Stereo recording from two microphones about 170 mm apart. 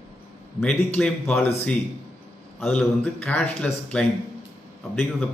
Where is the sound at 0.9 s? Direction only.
5° left (ahead or behind).